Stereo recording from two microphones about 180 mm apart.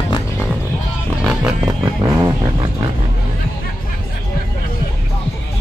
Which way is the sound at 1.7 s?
15° right (ahead or behind).